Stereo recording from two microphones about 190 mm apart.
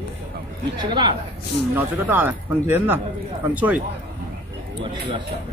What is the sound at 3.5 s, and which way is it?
Speech, 10° right (ahead or behind).